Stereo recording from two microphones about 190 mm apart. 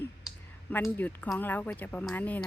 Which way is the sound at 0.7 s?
10° left (ahead or behind).